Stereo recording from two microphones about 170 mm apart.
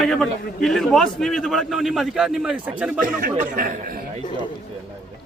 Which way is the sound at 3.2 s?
55° right (ahead or behind).